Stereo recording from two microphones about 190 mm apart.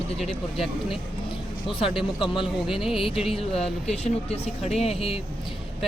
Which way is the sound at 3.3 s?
30° left (ahead or behind).